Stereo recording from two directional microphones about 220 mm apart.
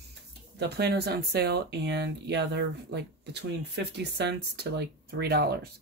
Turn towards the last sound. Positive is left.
turn(degrees=-45)  # may be behind; listen again after turning